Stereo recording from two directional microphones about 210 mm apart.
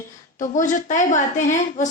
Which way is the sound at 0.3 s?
40° left (ahead or behind).